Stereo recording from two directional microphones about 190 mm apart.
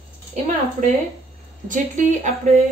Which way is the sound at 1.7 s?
40° right (ahead or behind).